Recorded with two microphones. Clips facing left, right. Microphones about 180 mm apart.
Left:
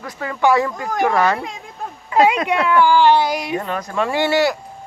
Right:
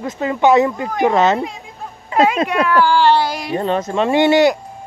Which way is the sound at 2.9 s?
15° left (ahead or behind).